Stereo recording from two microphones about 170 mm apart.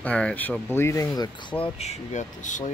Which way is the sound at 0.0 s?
5° left (ahead or behind).